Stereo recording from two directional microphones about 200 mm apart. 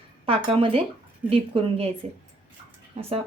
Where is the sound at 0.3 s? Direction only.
25° right (ahead or behind).